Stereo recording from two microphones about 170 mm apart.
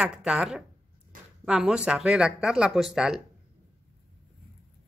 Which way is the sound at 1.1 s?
55° right (ahead or behind).